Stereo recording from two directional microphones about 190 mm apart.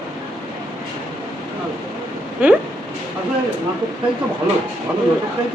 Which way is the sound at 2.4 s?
10° right (ahead or behind).